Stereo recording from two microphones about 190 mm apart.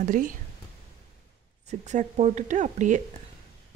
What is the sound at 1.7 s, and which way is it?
A woman's voice, 35° right (ahead or behind).